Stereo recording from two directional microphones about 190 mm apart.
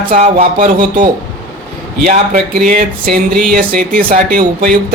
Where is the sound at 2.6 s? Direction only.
45° right (ahead or behind).